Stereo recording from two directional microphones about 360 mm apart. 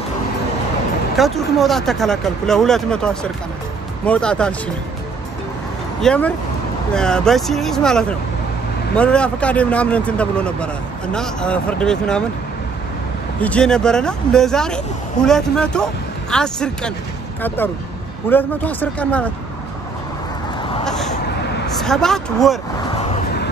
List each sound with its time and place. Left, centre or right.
1.1 s a man's voice: centre
5.9 s a man's voice: centre
13.4 s a man's voice: centre
18.3 s a man's voice: centre
20.8 s a sound: centre
21.1 s a sound: left
21.8 s a man's voice: centre
22.9 s vehicle: centre